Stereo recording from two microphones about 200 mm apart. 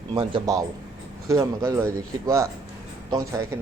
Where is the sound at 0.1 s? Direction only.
20° right (ahead or behind).